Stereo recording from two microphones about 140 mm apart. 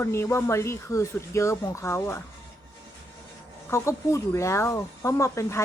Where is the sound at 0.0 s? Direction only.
20° left (ahead or behind).